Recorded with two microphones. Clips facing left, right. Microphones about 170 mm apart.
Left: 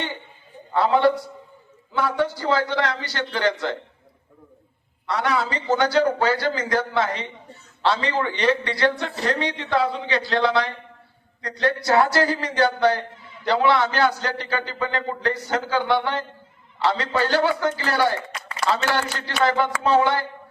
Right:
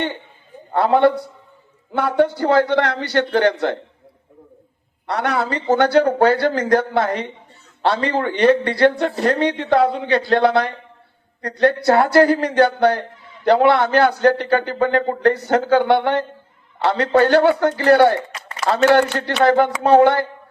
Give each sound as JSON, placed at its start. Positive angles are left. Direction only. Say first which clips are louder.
{"t": 0.7, "sound": "speech", "louder": "right 4 dB", "side_deg": -55}
{"t": 5.0, "sound": "a man's voice", "louder": "right 3 dB", "side_deg": -60}